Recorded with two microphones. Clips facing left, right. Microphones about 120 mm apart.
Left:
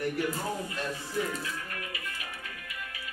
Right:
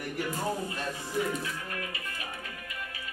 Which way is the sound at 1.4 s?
30° right (ahead or behind).